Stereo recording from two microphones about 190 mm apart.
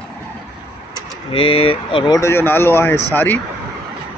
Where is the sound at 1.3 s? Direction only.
30° left (ahead or behind); by 3.0 s 10° left (ahead or behind).